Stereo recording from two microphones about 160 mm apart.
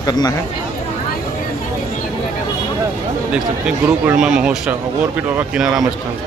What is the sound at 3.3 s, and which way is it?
Speech, 5° right (ahead or behind).